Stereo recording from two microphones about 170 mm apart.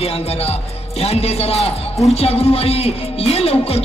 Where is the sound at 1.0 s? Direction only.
35° left (ahead or behind).